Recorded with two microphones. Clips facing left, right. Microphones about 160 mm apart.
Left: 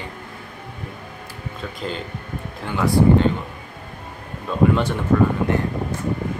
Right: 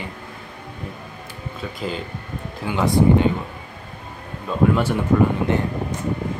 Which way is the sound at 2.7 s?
20° right (ahead or behind).